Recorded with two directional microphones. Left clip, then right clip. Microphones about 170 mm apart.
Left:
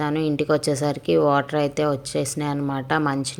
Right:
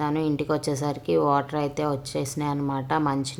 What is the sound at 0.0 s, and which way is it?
Speech, 15° left (ahead or behind).